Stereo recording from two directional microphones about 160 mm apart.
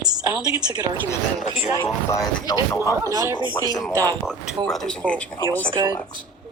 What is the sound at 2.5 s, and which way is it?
Speech, 20° left (ahead or behind).